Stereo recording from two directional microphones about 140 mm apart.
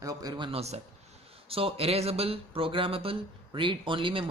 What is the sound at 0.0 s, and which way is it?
Speech, 25° right (ahead or behind).